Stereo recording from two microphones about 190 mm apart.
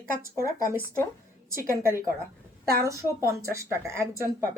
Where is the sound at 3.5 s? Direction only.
15° right (ahead or behind).